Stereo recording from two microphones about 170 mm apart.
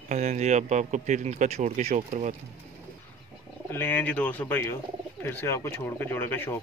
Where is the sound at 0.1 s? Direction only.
45° right (ahead or behind).